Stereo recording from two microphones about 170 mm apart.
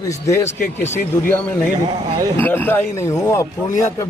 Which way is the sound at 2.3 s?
10° left (ahead or behind).